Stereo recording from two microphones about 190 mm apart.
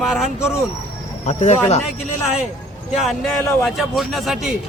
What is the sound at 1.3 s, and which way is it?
Speech, 35° left (ahead or behind).